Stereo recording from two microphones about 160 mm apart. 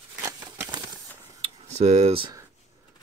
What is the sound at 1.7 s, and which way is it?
Speech, 45° right (ahead or behind).